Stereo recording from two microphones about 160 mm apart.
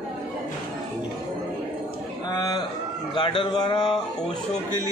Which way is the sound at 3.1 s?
30° left (ahead or behind).